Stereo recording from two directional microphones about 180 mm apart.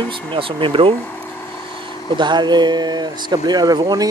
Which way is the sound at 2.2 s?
25° right (ahead or behind).